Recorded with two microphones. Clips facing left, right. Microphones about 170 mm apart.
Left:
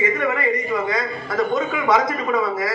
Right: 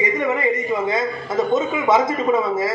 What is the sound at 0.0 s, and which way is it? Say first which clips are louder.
A woman's voice: right 1 dB; 20° right (ahead or behind).